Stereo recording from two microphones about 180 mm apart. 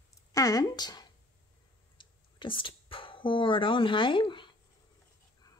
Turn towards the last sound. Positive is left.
turn(degrees=25)  # may be behind; listen again after turning